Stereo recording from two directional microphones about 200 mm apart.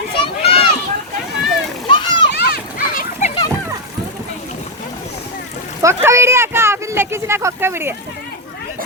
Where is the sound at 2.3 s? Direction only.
50° left (ahead or behind).